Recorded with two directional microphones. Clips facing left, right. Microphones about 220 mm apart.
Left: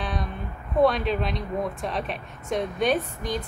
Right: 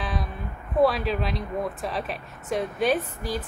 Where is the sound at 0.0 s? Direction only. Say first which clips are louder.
Left 1 dB; centre (ahead or behind).